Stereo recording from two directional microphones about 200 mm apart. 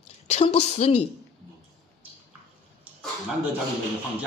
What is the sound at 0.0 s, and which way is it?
A woman's voice, 30° left (ahead or behind).